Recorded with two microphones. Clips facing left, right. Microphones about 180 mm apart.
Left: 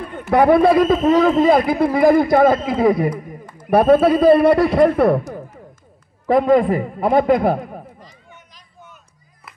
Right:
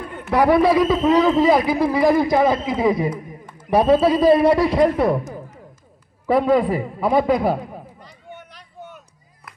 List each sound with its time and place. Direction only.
0.3 s a man's voice: 55° left (ahead or behind)
6.2 s a man's voice: 45° left (ahead or behind)